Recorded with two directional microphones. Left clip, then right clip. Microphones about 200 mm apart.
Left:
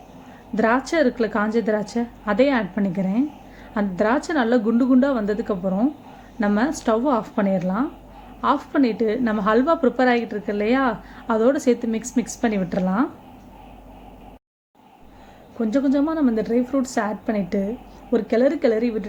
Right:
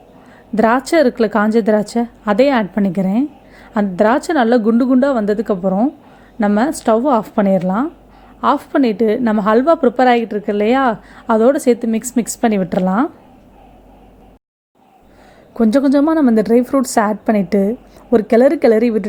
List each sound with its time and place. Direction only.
0.5 s a woman's voice: 45° right (ahead or behind)
15.5 s a woman's voice: 45° right (ahead or behind)